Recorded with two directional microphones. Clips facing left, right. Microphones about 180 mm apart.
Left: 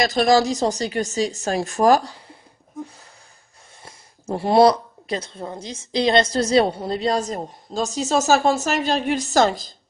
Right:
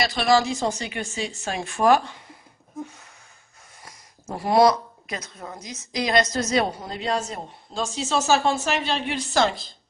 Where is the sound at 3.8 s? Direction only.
30° left (ahead or behind).